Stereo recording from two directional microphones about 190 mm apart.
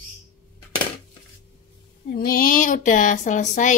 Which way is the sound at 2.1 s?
50° left (ahead or behind).